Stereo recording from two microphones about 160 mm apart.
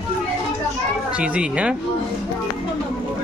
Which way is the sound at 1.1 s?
5° right (ahead or behind).